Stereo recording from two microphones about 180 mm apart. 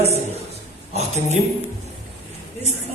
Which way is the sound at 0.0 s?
35° right (ahead or behind).